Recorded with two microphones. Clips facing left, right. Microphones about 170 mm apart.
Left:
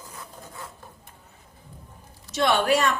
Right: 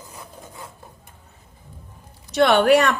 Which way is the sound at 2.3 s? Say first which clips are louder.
Right 7 dB; 65° right (ahead or behind).